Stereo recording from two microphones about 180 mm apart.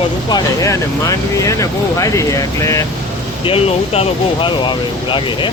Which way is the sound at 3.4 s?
35° left (ahead or behind).